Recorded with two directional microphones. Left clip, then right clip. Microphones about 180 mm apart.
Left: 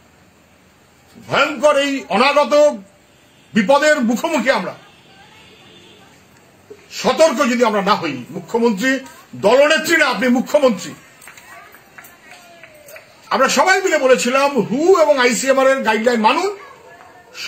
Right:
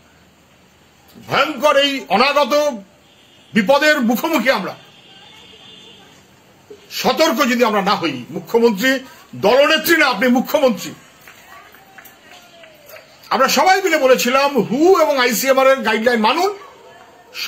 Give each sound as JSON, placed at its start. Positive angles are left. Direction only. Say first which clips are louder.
{"t": 1.2, "sound": "speech", "louder": "left 1 dB", "side_deg": -25}
{"t": 6.9, "sound": "speech", "louder": "left 2 dB", "side_deg": -25}
{"t": 13.3, "sound": "speech", "louder": "even", "side_deg": -25}